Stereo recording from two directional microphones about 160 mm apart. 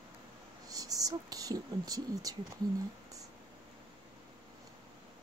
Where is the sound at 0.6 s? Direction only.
20° right (ahead or behind).